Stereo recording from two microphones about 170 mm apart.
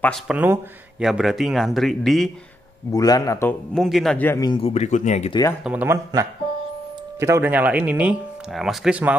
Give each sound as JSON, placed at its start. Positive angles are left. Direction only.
{"t": 0.3, "sound": "speech", "side_deg": -10}
{"t": 2.9, "sound": "speech", "side_deg": 20}
{"t": 3.7, "sound": "speech", "side_deg": 0}
{"t": 4.3, "sound": "speech", "side_deg": 20}
{"t": 4.6, "sound": "speech", "side_deg": 40}
{"t": 5.6, "sound": "speech", "side_deg": -10}